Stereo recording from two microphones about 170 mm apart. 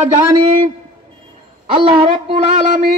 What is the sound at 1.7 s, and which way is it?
Speech, 30° right (ahead or behind).